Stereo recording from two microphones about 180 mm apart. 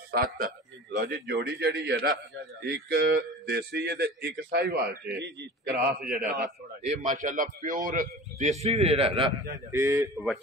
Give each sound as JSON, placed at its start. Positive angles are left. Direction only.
{"t": 0.1, "sound": "speech", "side_deg": -55}
{"t": 0.9, "sound": "a man's voice", "side_deg": -65}
{"t": 9.7, "sound": "speech", "side_deg": -15}
{"t": 10.1, "sound": "speech", "side_deg": 0}